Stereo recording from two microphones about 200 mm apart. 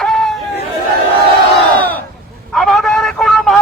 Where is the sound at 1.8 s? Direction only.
10° left (ahead or behind).